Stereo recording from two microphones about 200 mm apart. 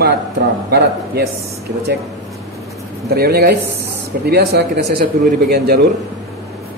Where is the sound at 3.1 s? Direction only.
55° right (ahead or behind).